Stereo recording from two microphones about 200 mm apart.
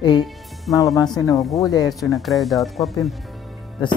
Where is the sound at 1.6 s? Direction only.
20° left (ahead or behind).